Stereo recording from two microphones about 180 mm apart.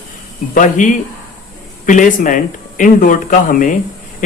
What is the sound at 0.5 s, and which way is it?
Speech, 45° left (ahead or behind).